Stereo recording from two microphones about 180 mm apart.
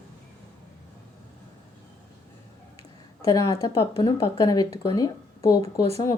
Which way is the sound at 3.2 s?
20° left (ahead or behind).